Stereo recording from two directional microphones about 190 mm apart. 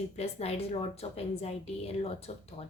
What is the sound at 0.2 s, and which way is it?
A woman's voice, 35° left (ahead or behind).